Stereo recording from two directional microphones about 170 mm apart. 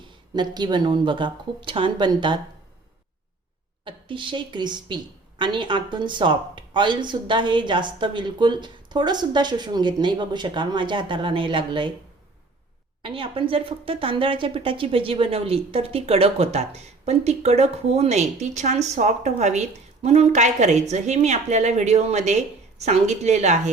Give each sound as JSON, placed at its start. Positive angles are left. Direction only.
{"t": 0.1, "sound": "a woman's voice", "side_deg": -25}
{"t": 3.8, "sound": "a woman's voice", "side_deg": -30}
{"t": 13.0, "sound": "speech", "side_deg": -30}